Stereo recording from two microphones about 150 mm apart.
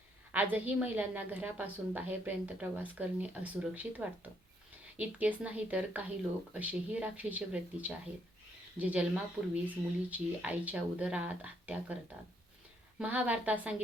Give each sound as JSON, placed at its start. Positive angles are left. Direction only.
{"t": 0.3, "sound": "a woman's voice", "side_deg": -10}
{"t": 13.0, "sound": "a woman's voice", "side_deg": -10}